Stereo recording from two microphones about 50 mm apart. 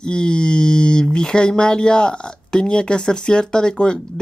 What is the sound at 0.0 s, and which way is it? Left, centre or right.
Speech, centre.